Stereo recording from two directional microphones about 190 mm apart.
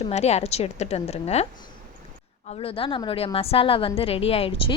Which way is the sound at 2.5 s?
30° left (ahead or behind).